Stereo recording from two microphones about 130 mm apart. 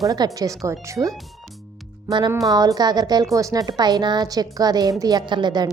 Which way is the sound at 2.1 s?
35° right (ahead or behind).